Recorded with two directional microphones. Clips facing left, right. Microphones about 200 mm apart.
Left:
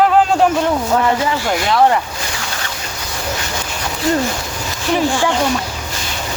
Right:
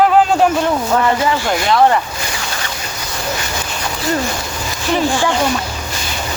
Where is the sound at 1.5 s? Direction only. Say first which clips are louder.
Even; 10° left (ahead or behind).